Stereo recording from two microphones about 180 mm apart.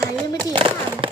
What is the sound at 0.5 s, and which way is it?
Firecracker, 30° right (ahead or behind).